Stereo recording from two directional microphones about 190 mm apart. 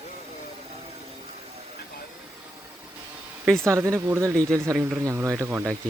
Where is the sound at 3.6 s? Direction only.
15° right (ahead or behind).